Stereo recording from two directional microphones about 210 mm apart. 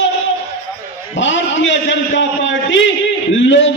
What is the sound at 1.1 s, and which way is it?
A man's voice, 60° left (ahead or behind).